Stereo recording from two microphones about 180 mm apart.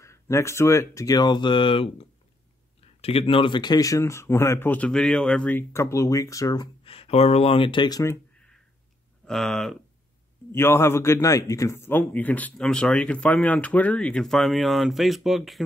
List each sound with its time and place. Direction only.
0.0 s speech: 15° left (ahead or behind)
9.2 s speech: 5° left (ahead or behind)
10.5 s speech: 15° left (ahead or behind)